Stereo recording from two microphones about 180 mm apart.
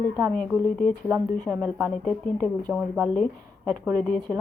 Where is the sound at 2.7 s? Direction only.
5° right (ahead or behind).